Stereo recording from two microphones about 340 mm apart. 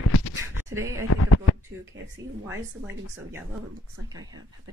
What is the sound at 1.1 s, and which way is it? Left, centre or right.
Speech, left.